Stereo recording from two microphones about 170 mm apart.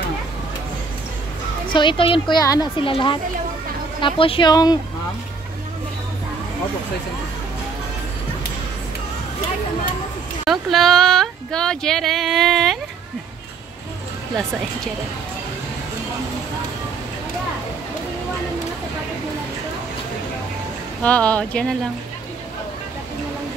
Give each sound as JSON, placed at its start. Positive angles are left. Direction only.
{"t": 1.7, "sound": "a woman's voice", "side_deg": 30}
{"t": 10.4, "sound": "speech", "side_deg": 0}
{"t": 21.0, "sound": "speech", "side_deg": 10}